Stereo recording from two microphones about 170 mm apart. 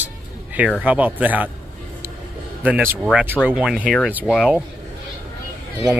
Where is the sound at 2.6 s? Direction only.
10° right (ahead or behind).